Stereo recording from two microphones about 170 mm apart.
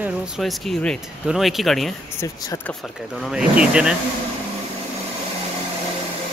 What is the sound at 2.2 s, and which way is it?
Speech, 20° left (ahead or behind).